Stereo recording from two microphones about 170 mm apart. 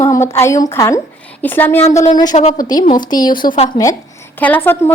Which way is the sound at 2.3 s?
45° left (ahead or behind).